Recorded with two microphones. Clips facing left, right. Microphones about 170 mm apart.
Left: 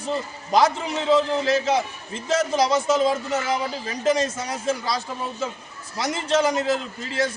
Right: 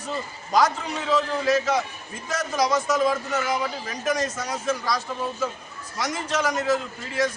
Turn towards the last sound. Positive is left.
turn(degrees=25)  # may be behind; listen again after turning